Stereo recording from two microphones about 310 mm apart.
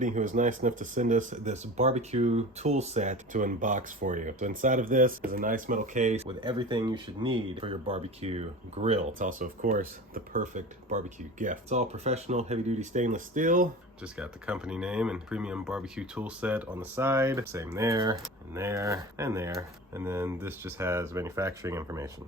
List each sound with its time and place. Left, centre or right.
0.0 s speech: right
14.0 s speech: centre